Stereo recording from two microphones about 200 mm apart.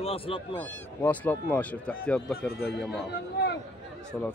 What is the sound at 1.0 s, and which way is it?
Speech, 10° left (ahead or behind).